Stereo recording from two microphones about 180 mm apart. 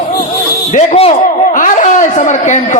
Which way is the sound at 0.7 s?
40° left (ahead or behind).